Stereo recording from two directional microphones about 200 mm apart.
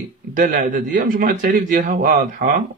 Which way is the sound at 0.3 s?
40° right (ahead or behind).